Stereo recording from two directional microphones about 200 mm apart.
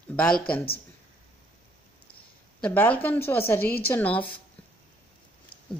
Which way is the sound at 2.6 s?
10° left (ahead or behind).